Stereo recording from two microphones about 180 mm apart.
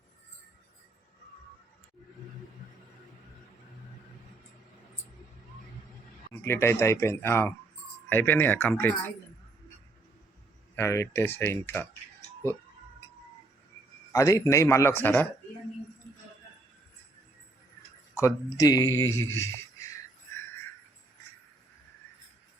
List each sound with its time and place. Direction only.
6.4 s a man's voice: 15° left (ahead or behind)
10.8 s a man's voice: 15° left (ahead or behind)
14.1 s a man's voice: 20° left (ahead or behind)
18.2 s a man's voice: 20° left (ahead or behind)